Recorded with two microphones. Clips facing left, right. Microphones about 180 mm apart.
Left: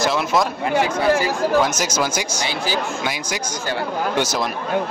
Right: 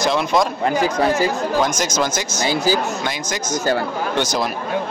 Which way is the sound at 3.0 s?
10° left (ahead or behind).